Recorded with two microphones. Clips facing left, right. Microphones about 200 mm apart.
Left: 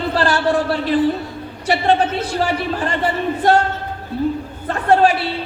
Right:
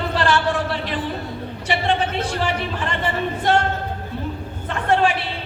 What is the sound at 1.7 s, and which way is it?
A man's voice, 40° left (ahead or behind).